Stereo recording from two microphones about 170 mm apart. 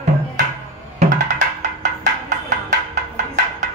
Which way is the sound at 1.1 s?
45° right (ahead or behind).